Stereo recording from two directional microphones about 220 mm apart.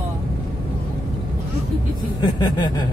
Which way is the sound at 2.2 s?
20° left (ahead or behind).